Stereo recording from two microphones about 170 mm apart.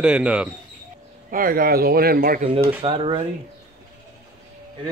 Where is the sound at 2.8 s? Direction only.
30° right (ahead or behind).